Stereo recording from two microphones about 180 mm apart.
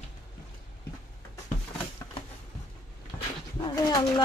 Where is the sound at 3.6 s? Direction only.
25° left (ahead or behind).